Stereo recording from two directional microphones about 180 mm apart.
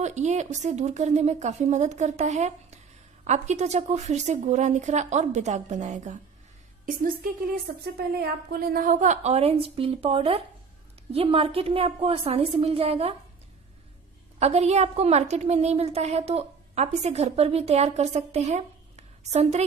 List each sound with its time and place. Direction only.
0.0 s a woman's voice: 40° right (ahead or behind)
8.5 s a woman's voice: 55° right (ahead or behind); by 13.1 s 35° right (ahead or behind)
14.4 s a woman's voice: 35° right (ahead or behind)